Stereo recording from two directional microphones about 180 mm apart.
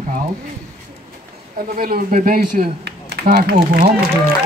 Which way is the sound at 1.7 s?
55° right (ahead or behind).